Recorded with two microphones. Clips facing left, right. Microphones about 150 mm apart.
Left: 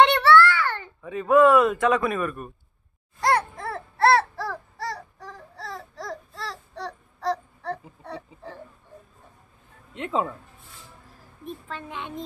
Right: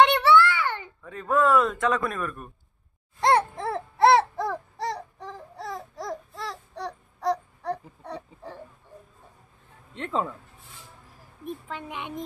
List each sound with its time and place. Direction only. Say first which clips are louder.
0.0 s a sound: left 2 dB; 15° right (ahead or behind)
1.0 s a man's voice: left 6 dB; 5° left (ahead or behind)
3.2 s baby cry: right 2 dB; 25° right (ahead or behind)
8.0 s a sound: even; 15° right (ahead or behind)
9.9 s speech: left 2 dB; 5° left (ahead or behind)
11.4 s a child's voice: right 1 dB; 15° right (ahead or behind)